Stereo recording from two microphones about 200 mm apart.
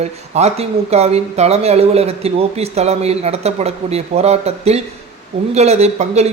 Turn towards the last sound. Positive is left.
turn(degrees=-35)  # may be behind; listen again after turning